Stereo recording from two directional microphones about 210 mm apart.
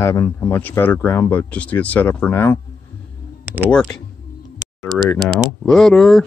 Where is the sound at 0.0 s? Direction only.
15° left (ahead or behind).